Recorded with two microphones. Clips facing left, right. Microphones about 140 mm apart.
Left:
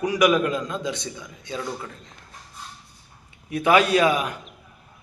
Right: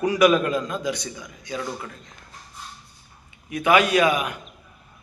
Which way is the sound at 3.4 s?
35° left (ahead or behind).